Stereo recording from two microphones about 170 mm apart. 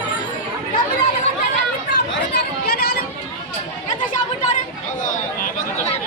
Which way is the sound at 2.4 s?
70° left (ahead or behind).